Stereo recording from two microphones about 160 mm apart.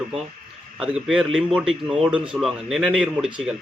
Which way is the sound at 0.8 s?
5° right (ahead or behind).